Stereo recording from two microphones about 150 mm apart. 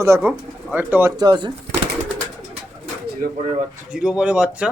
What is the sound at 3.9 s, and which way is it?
Speech, 5° right (ahead or behind).